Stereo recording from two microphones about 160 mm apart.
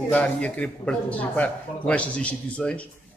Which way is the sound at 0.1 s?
10° left (ahead or behind).